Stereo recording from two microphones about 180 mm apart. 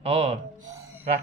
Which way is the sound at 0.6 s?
15° right (ahead or behind).